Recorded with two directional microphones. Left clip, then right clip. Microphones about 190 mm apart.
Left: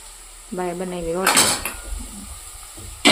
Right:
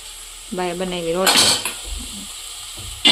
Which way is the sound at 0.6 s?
5° right (ahead or behind).